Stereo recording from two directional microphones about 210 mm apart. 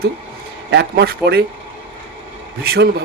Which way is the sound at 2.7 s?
50° right (ahead or behind).